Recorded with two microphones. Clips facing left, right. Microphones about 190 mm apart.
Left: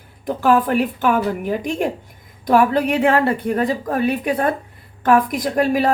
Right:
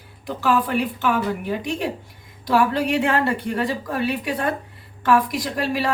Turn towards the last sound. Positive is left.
turn(degrees=50)  # may be behind; listen again after turning